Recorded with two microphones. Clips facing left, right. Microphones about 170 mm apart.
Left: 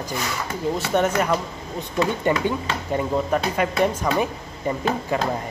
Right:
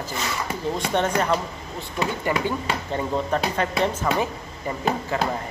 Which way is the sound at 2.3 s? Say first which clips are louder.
Left 2 dB; 25° left (ahead or behind).